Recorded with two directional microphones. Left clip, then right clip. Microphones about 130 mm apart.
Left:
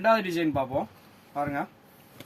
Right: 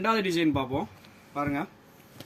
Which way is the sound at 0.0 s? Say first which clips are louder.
Left 2 dB; 10° left (ahead or behind).